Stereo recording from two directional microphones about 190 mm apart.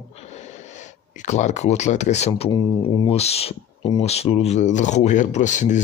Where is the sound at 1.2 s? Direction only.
40° left (ahead or behind).